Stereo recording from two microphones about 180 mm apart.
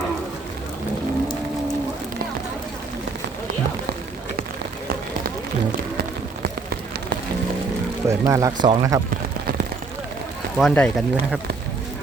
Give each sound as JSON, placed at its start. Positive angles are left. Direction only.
{"t": 8.0, "sound": "speech", "side_deg": -15}
{"t": 10.6, "sound": "speech", "side_deg": 5}